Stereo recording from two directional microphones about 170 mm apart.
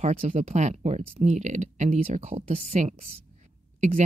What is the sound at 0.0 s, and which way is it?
A woman's voice, 40° right (ahead or behind).